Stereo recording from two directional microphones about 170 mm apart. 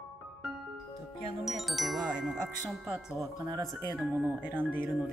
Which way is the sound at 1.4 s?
Centre (ahead or behind).